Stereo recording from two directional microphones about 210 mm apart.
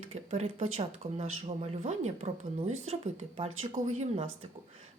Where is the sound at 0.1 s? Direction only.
30° right (ahead or behind).